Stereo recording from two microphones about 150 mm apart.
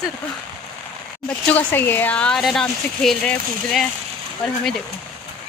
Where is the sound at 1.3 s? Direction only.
10° left (ahead or behind).